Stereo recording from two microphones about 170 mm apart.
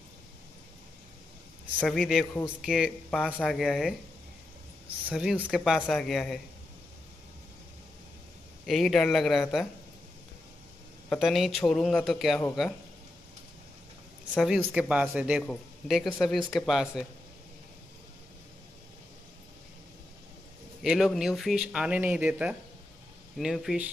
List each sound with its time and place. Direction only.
1.8 s speech: centre (ahead or behind)
5.1 s speech: 5° right (ahead or behind)
8.6 s speech: centre (ahead or behind)
11.1 s speech: centre (ahead or behind)
14.3 s speech: 5° right (ahead or behind)
20.8 s speech: 5° right (ahead or behind)